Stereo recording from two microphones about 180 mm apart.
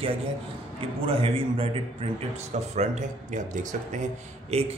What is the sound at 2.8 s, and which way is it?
Speech, 45° right (ahead or behind).